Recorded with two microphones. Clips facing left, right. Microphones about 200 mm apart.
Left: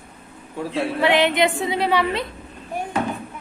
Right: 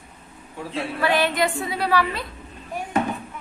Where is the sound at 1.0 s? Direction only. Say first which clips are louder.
Left 3 dB; 20° left (ahead or behind).